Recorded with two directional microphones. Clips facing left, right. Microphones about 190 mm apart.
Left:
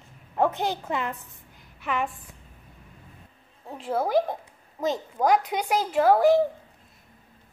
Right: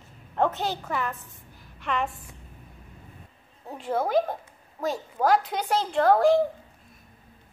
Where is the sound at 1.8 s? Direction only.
Centre (ahead or behind).